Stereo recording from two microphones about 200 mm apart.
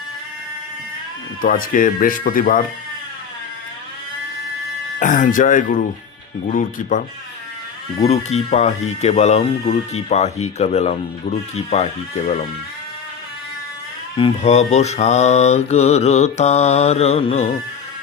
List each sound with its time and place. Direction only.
1.4 s speech: 45° left (ahead or behind)
4.9 s speech: 40° left (ahead or behind)
8.0 s speech: 35° left (ahead or behind)
14.2 s speech: 30° left (ahead or behind)